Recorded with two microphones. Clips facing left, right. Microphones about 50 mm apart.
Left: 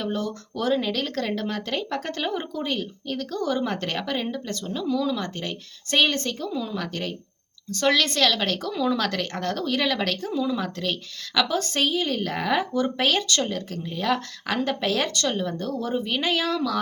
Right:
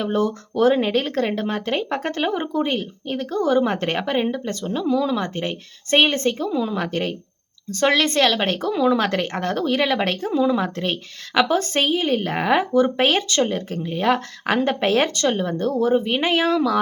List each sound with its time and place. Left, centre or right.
0.0 s speech: right
1.0 s speech: right